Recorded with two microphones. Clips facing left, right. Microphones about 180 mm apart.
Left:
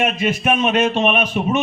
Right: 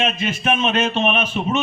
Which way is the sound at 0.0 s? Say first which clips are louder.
Left 3 dB; 15° left (ahead or behind).